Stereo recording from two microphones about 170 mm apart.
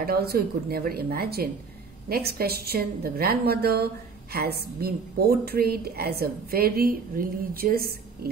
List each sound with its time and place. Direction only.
0.0 s a woman's voice: 65° right (ahead or behind)